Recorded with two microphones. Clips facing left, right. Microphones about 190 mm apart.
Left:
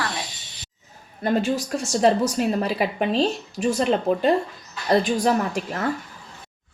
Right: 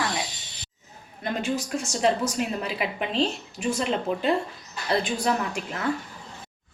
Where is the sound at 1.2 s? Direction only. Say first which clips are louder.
Left 6 dB; 40° left (ahead or behind).